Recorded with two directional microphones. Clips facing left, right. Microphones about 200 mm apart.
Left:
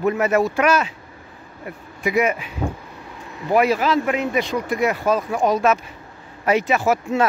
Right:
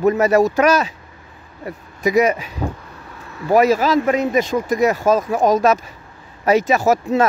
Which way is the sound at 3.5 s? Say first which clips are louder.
Right 3 dB; 40° right (ahead or behind).